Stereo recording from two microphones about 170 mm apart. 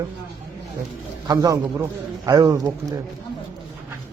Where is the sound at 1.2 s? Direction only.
20° right (ahead or behind).